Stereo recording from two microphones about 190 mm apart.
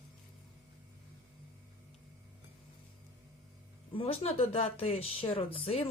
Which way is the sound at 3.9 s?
30° left (ahead or behind).